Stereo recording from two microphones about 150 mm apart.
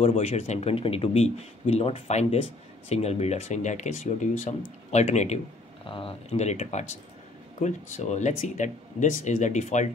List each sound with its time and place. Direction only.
0.0 s speech: 45° left (ahead or behind)
5.9 s speech: 35° left (ahead or behind); by 9.8 s 50° left (ahead or behind)